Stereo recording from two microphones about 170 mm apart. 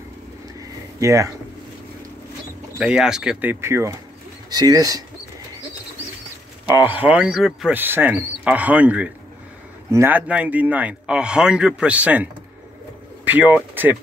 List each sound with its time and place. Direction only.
0.6 s a sound: 20° right (ahead or behind)
2.8 s speech: 5° right (ahead or behind); by 5.0 s 20° right (ahead or behind)
6.7 s speech: 10° right (ahead or behind)